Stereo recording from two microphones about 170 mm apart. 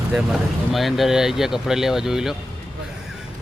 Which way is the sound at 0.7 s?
Centre (ahead or behind).